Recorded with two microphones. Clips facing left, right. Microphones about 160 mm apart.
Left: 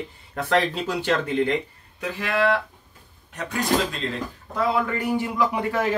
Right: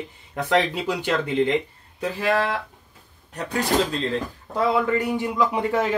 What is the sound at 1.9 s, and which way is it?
Speech, 35° right (ahead or behind).